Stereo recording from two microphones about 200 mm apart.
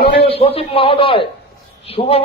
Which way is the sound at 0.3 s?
30° left (ahead or behind).